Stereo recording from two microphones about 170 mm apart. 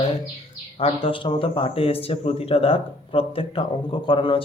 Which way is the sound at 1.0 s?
30° left (ahead or behind).